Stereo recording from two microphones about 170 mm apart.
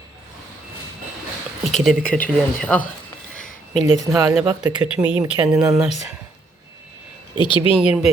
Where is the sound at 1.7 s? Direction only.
Centre (ahead or behind).